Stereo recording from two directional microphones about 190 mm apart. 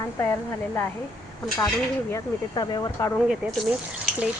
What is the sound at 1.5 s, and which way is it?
Speech, 15° left (ahead or behind).